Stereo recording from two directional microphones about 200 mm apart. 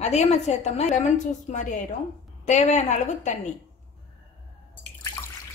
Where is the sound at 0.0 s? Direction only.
35° left (ahead or behind).